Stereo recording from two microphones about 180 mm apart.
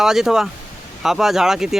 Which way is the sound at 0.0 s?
Centre (ahead or behind).